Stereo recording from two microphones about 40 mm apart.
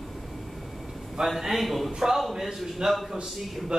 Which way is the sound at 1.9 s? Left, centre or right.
Centre.